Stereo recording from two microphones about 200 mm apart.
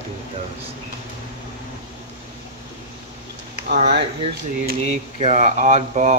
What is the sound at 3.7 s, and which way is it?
Speech, 55° right (ahead or behind).